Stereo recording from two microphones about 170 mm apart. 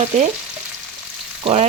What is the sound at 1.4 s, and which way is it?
Speech, 35° right (ahead or behind).